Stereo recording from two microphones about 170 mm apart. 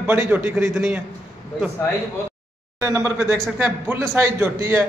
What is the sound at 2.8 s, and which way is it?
A man's voice, 15° right (ahead or behind).